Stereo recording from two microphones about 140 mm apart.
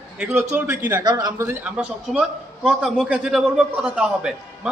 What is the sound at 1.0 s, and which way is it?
Speech, 25° right (ahead or behind).